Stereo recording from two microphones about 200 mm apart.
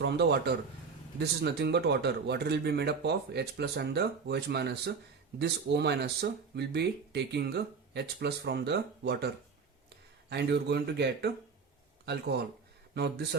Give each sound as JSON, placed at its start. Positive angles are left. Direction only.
{"t": 0.0, "sound": "a man's voice", "side_deg": -55}